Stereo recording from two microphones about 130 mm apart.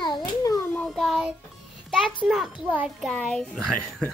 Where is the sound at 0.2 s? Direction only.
25° left (ahead or behind).